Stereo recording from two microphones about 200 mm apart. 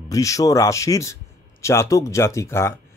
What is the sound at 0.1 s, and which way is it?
A man's voice, 15° left (ahead or behind).